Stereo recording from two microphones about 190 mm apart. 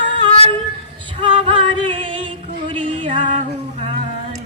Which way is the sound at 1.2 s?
25° right (ahead or behind).